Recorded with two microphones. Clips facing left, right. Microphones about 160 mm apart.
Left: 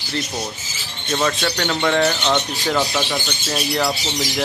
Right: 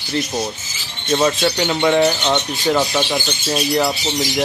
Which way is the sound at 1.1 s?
10° right (ahead or behind).